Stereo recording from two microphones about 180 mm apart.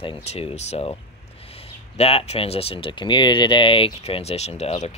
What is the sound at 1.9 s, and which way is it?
Speech, 35° left (ahead or behind).